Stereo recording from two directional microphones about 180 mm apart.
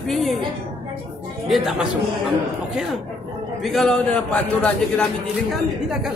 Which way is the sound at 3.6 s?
Centre (ahead or behind).